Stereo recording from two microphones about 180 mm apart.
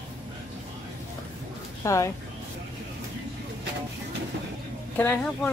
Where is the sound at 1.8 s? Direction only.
15° left (ahead or behind).